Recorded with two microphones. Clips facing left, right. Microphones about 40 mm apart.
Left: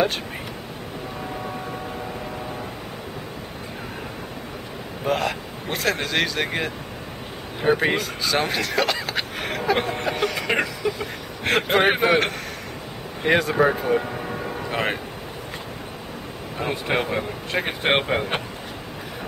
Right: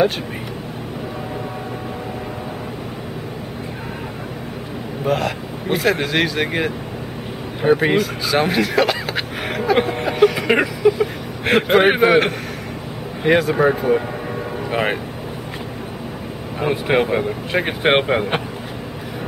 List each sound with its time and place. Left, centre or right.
5.0 s speech: centre
7.6 s a sound: centre
13.2 s speech: centre
16.5 s speech: centre